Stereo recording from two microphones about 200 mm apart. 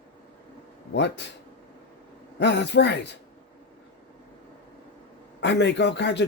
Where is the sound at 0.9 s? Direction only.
60° left (ahead or behind).